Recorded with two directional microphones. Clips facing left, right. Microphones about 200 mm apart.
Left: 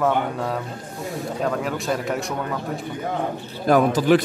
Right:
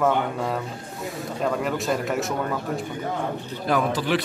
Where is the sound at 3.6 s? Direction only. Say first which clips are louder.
Left 7 dB; 45° left (ahead or behind).